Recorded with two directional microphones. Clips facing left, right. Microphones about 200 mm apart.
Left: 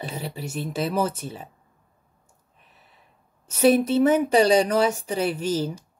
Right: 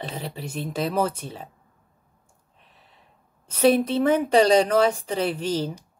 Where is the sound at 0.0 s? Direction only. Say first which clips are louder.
Left 1 dB; 10° left (ahead or behind).